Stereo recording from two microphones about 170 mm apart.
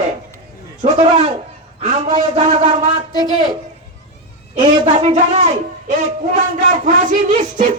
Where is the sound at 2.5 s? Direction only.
35° right (ahead or behind).